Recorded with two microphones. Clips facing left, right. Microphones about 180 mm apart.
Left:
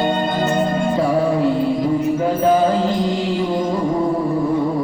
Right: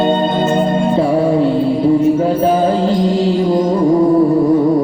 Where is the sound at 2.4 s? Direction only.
30° right (ahead or behind).